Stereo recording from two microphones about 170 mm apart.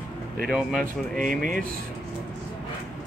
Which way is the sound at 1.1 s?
50° right (ahead or behind).